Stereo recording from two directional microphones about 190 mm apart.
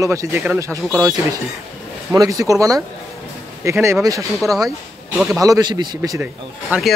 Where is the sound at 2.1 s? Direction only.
15° right (ahead or behind).